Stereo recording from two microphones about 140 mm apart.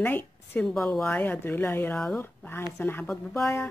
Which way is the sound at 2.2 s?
15° left (ahead or behind).